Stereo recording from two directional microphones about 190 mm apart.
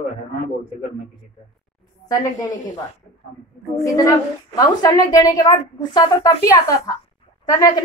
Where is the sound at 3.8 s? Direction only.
15° left (ahead or behind).